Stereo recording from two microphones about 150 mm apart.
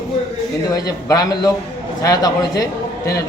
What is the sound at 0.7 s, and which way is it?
A man's voice, 25° left (ahead or behind).